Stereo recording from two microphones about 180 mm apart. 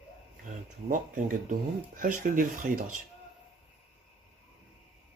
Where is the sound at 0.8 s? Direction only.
50° right (ahead or behind).